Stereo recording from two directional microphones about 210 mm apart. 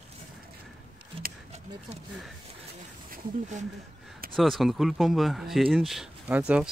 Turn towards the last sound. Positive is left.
turn(degrees=0)  # may be behind; listen again after turning